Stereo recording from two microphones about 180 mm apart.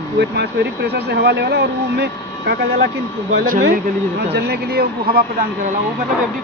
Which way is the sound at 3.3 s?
50° right (ahead or behind).